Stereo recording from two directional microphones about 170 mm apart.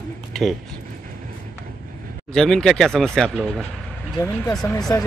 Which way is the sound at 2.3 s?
5° left (ahead or behind).